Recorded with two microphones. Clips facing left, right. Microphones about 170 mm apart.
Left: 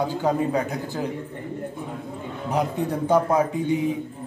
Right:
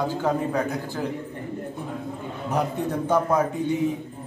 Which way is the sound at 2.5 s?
10° left (ahead or behind).